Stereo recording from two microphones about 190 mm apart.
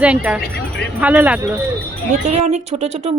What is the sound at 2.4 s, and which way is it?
Speech, 35° right (ahead or behind).